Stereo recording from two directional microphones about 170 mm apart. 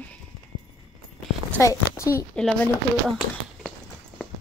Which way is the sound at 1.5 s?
15° left (ahead or behind).